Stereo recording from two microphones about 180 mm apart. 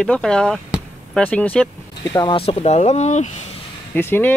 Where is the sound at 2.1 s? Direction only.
30° left (ahead or behind).